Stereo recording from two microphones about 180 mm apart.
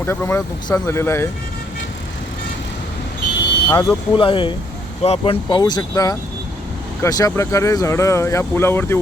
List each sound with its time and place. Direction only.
0.0 s speech: 15° left (ahead or behind)
3.7 s speech: 20° left (ahead or behind)